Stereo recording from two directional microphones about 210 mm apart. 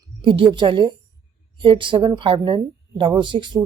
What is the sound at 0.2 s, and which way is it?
Speech, 25° right (ahead or behind).